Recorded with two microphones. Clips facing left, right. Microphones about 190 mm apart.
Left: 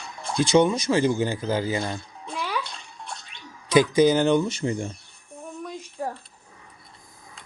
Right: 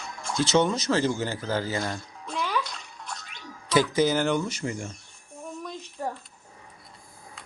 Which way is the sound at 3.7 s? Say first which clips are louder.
Left 5 dB; 15° left (ahead or behind).